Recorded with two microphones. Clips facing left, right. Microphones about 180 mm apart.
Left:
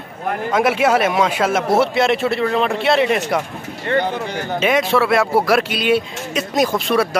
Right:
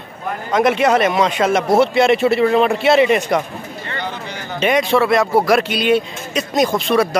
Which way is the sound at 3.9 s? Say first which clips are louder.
Left 9 dB; 55° left (ahead or behind).